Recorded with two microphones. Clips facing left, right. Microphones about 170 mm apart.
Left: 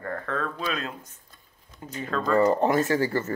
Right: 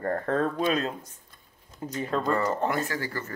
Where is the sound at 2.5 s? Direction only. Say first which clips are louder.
Left 6 dB; 20° left (ahead or behind).